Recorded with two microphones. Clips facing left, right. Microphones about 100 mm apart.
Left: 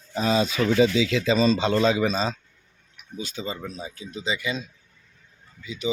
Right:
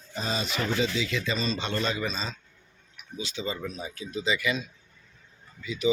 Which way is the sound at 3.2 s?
45° left (ahead or behind).